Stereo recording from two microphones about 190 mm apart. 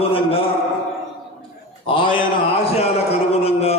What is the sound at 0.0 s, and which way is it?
Speech, 30° left (ahead or behind).